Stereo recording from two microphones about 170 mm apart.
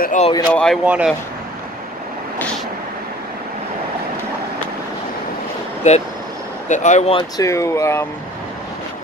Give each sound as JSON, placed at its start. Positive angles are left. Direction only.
{"t": 0.0, "sound": "speech", "side_deg": 45}
{"t": 0.5, "sound": "speech", "side_deg": 5}
{"t": 0.8, "sound": "speech", "side_deg": -5}
{"t": 5.9, "sound": "speech", "side_deg": 45}
{"t": 7.3, "sound": "speech", "side_deg": 20}